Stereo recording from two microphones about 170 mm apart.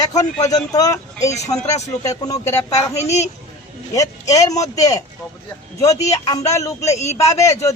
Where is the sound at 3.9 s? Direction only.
20° left (ahead or behind).